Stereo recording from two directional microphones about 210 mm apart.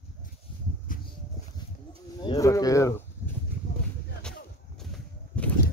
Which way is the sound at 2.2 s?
20° left (ahead or behind).